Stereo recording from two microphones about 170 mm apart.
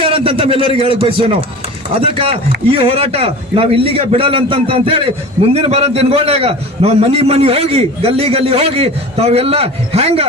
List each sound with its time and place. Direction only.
0.0 s a man's voice: 30° right (ahead or behind)